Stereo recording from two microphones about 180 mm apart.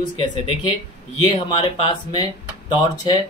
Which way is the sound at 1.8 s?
25° left (ahead or behind).